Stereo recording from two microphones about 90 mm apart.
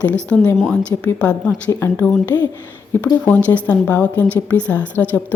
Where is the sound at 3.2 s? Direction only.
20° left (ahead or behind).